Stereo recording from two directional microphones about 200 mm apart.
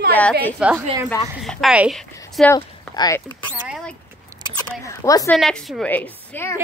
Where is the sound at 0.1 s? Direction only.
10° left (ahead or behind).